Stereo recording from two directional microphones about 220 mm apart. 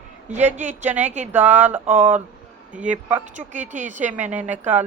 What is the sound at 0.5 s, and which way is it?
Speech, 35° right (ahead or behind).